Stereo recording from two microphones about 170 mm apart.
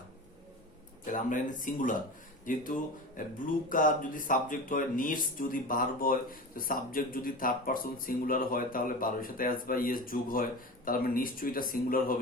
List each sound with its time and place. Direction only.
1.0 s speech: 50° left (ahead or behind)